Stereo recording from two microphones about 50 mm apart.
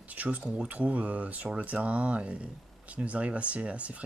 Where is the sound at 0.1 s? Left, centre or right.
Right.